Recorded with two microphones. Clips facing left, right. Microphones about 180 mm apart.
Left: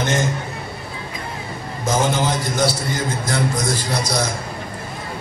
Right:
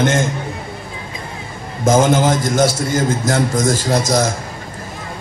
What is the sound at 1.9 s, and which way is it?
A man's voice, 50° right (ahead or behind).